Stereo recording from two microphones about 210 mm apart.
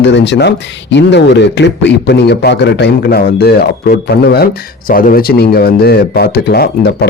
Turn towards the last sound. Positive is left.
turn(degrees=50)  # may be behind; listen again after turning